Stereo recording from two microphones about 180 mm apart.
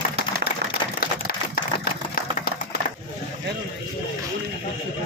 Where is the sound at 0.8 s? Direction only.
25° left (ahead or behind).